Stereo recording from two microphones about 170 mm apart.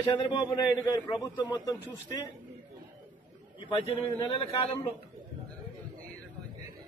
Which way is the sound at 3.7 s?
35° left (ahead or behind).